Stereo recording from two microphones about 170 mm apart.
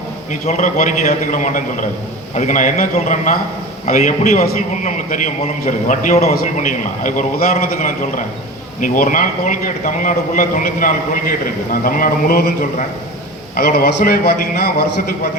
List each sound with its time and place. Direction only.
0.4 s a man's voice: 45° left (ahead or behind)
13.6 s a man's voice: 65° left (ahead or behind)